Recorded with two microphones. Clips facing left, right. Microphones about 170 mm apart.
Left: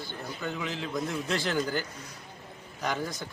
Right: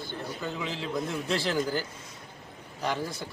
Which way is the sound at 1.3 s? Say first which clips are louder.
Right 3 dB; 30° right (ahead or behind).